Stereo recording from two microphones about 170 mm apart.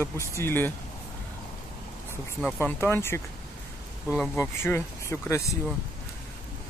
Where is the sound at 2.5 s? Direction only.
15° left (ahead or behind).